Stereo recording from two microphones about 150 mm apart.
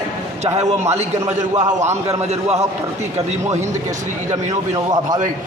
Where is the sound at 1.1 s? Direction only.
50° right (ahead or behind).